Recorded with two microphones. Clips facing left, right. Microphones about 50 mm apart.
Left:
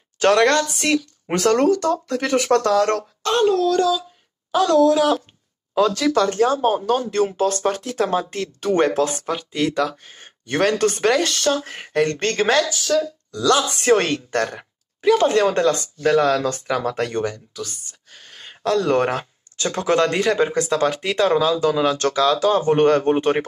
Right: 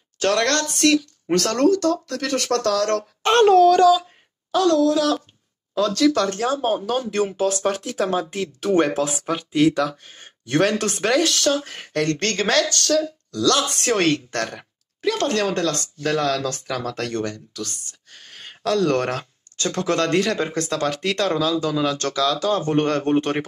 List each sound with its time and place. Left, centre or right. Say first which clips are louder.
0.2 s a woman's voice: left 5 dB; left
0.5 s speech: even; centre
2.3 s speech: left 5 dB; right
2.7 s speech: left 3 dB; right
4.6 s speech: left 3 dB; left
5.8 s speech: left 1 dB; centre
21.4 s speech: left 3 dB; left; by 23.4 s centre